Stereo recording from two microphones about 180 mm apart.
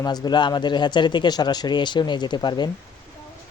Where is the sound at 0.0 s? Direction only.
20° left (ahead or behind).